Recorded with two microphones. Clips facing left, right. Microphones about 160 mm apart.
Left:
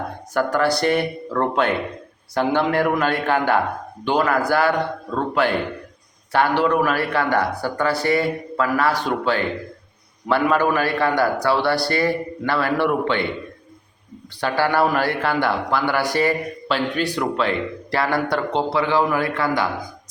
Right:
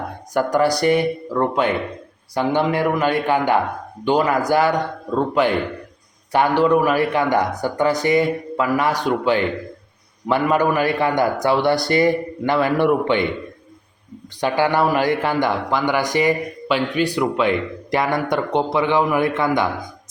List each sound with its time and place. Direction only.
0.3 s a man's voice: 15° right (ahead or behind)
14.4 s a man's voice: 15° right (ahead or behind)